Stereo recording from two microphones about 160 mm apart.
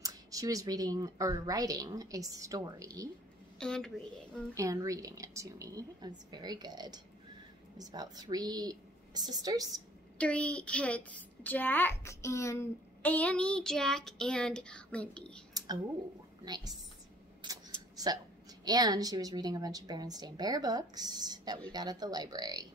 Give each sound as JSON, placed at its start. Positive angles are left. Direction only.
{"t": 0.0, "sound": "speech", "side_deg": -20}
{"t": 3.5, "sound": "a woman's voice", "side_deg": 5}
{"t": 4.6, "sound": "speech", "side_deg": -20}
{"t": 10.1, "sound": "a woman's voice", "side_deg": 10}
{"t": 15.5, "sound": "a sound", "side_deg": -25}
{"t": 16.4, "sound": "speech", "side_deg": -25}
{"t": 17.4, "sound": "camera", "side_deg": -25}
{"t": 18.7, "sound": "speech", "side_deg": -25}